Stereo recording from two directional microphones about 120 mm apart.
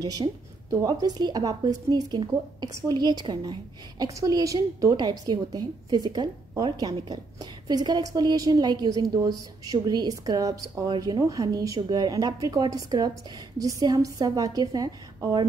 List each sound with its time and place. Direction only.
0.8 s a woman's voice: 35° right (ahead or behind)